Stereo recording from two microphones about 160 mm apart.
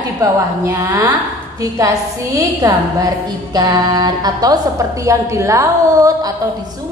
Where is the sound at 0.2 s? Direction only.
20° right (ahead or behind).